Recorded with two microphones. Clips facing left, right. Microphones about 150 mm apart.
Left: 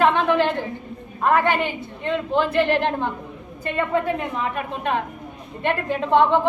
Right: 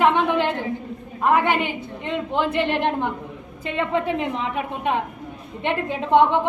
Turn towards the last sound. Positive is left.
turn(degrees=-15)  # may be behind; listen again after turning